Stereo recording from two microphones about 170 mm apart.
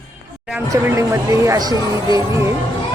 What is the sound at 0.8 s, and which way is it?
A woman's voice, 15° right (ahead or behind).